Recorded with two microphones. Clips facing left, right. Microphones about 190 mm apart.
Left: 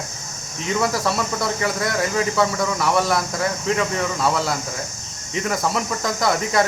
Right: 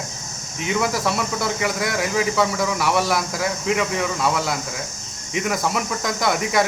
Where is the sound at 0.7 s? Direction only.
Centre (ahead or behind).